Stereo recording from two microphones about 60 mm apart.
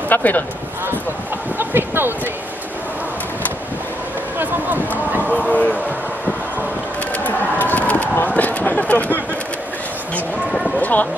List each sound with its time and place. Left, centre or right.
0.1 s speech: left
1.6 s speech: right
4.4 s a sound: right
5.5 s speech: left
7.2 s a sound: left
10.8 s speech: left